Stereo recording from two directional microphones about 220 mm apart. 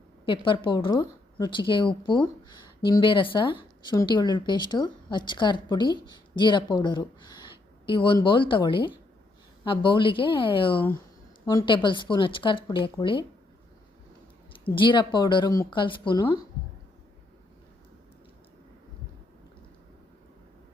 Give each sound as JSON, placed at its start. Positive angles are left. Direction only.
{"t": 0.3, "sound": "a woman's voice", "side_deg": 20}
{"t": 14.6, "sound": "a woman's voice", "side_deg": 20}